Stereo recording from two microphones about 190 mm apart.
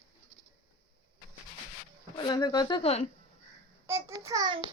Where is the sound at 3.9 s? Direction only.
15° right (ahead or behind).